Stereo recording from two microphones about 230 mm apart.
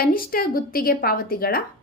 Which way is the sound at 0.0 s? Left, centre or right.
Left.